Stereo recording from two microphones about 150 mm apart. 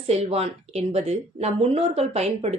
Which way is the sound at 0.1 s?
45° right (ahead or behind).